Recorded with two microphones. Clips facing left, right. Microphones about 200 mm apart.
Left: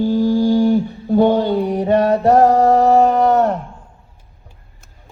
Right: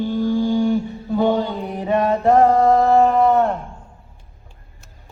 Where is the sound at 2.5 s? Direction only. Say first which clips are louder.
Left 2 dB; 75° left (ahead or behind).